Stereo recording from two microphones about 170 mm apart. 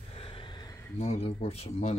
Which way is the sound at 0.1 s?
30° left (ahead or behind).